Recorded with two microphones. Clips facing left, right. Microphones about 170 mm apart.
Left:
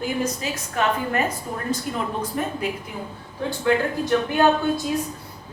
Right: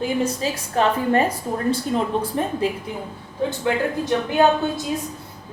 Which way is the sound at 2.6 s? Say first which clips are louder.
Right 4 dB; 30° right (ahead or behind).